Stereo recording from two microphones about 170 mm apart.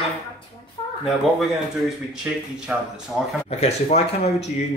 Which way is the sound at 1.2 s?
Centre (ahead or behind).